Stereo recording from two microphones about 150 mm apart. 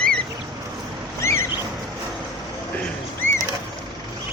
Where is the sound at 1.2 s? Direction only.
20° left (ahead or behind).